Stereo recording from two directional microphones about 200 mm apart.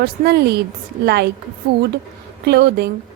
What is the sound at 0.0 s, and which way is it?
Speech, 55° right (ahead or behind).